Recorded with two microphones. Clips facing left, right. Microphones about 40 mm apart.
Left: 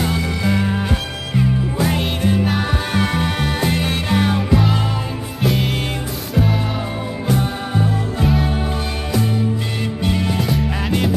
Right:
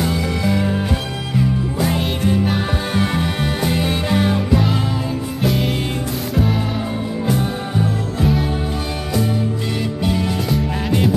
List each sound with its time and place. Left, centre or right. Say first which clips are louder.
0.0 s music: right 1 dB; centre
3.6 s music: right 1 dB; left
4.1 s music: left 1 dB; centre
5.4 s music: left 1 dB; centre